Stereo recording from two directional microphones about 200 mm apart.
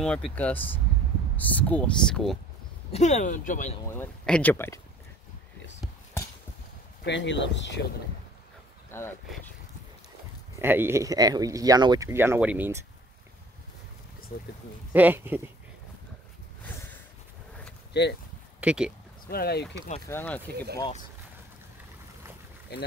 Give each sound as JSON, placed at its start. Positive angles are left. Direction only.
{"t": 0.0, "sound": "speech", "side_deg": 5}
{"t": 2.9, "sound": "speech", "side_deg": 35}
{"t": 3.7, "sound": "speech", "side_deg": 15}
{"t": 7.1, "sound": "speech", "side_deg": 65}
{"t": 8.9, "sound": "speech", "side_deg": 10}
{"t": 10.6, "sound": "speech", "side_deg": -10}
{"t": 14.9, "sound": "speech", "side_deg": -10}
{"t": 17.9, "sound": "speech", "side_deg": 55}
{"t": 18.6, "sound": "speech", "side_deg": -5}
{"t": 19.2, "sound": "speech", "side_deg": 50}
{"t": 20.1, "sound": "speech", "side_deg": 10}